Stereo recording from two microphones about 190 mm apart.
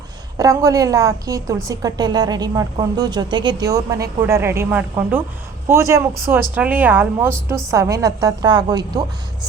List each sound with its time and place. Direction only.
0.3 s a woman's voice: 15° right (ahead or behind)